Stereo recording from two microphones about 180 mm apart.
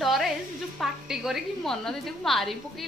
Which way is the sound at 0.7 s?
Centre (ahead or behind).